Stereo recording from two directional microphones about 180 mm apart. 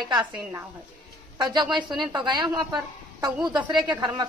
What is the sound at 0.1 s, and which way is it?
A woman's voice, 20° right (ahead or behind).